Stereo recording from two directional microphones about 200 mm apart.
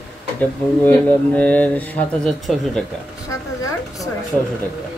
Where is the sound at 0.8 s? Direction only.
10° left (ahead or behind).